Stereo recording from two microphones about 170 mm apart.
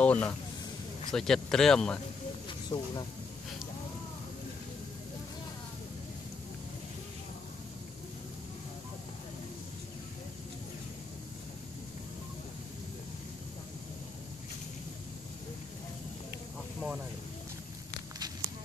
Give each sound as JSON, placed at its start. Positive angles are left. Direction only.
{"t": 0.0, "sound": "speech", "side_deg": 10}
{"t": 2.7, "sound": "speech", "side_deg": 30}